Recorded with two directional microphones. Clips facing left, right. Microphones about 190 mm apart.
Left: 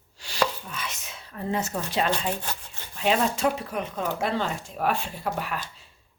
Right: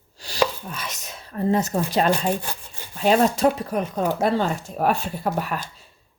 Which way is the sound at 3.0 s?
40° right (ahead or behind).